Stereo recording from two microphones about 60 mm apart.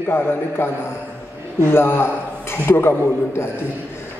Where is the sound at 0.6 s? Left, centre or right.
Left.